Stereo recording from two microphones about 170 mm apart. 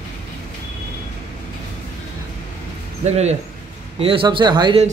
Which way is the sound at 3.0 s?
40° right (ahead or behind).